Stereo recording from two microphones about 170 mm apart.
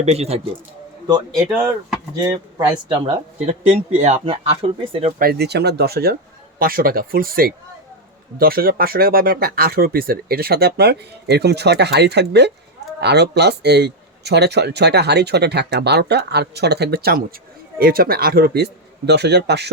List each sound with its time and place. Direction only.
0.0 s speech: 40° right (ahead or behind)
2.2 s speech: 20° right (ahead or behind)
3.4 s speech: 45° right (ahead or behind)
5.2 s speech: 70° right (ahead or behind)